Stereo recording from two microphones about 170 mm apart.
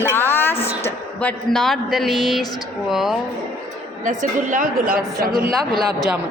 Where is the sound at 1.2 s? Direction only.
5° left (ahead or behind).